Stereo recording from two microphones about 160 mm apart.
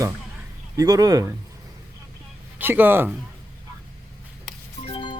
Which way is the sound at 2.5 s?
10° right (ahead or behind).